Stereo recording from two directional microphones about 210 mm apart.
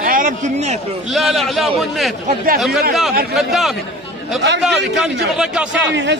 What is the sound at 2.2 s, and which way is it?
Speech, 40° right (ahead or behind).